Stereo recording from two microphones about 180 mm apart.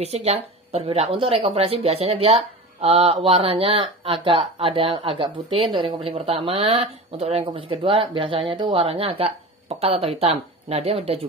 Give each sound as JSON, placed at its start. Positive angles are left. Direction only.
{"t": 0.0, "sound": "a woman's voice", "side_deg": -35}